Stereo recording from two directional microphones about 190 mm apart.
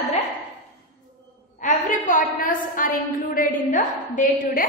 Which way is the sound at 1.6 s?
45° left (ahead or behind).